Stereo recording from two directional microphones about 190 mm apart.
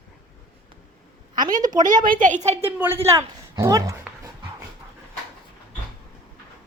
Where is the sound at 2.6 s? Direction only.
10° right (ahead or behind).